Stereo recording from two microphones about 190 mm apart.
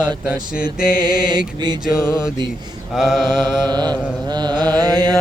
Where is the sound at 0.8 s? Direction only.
20° right (ahead or behind).